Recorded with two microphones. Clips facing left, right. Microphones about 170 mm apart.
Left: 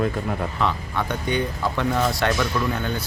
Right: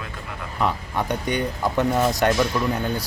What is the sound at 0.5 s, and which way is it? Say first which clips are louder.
Speech: even; 15° right (ahead or behind).